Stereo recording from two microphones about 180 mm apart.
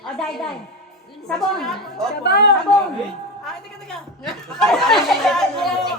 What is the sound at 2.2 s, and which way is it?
Speech, 65° left (ahead or behind).